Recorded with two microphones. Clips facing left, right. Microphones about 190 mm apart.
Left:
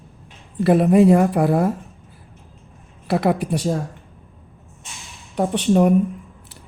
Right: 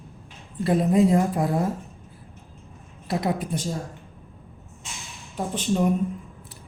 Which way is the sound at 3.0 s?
70° left (ahead or behind).